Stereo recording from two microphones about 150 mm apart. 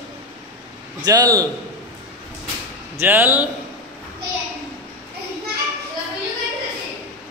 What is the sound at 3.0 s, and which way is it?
Speech, 15° right (ahead or behind).